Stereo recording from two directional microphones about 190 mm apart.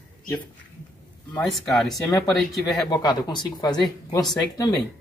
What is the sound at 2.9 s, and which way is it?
Speech, 20° left (ahead or behind).